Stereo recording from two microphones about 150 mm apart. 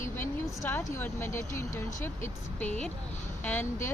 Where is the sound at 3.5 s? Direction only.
15° left (ahead or behind).